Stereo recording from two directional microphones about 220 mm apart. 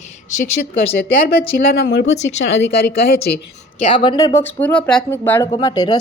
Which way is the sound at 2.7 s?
45° left (ahead or behind).